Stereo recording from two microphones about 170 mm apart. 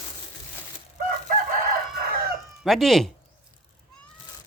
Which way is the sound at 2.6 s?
Centre (ahead or behind).